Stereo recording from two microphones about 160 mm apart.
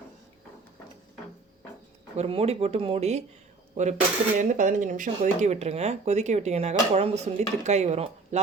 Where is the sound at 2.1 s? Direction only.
40° right (ahead or behind).